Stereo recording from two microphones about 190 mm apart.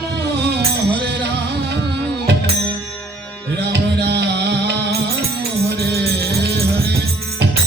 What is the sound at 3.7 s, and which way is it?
Music, 65° right (ahead or behind).